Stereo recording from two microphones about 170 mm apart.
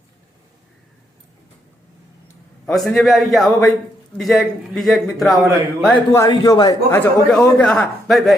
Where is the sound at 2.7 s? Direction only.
Centre (ahead or behind).